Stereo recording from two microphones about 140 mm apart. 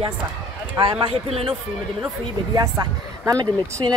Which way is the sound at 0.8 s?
40° right (ahead or behind).